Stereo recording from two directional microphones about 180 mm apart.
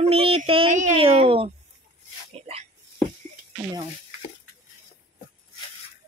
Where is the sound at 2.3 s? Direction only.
35° right (ahead or behind).